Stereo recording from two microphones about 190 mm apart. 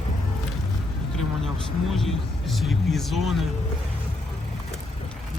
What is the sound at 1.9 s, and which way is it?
Speech, centre (ahead or behind).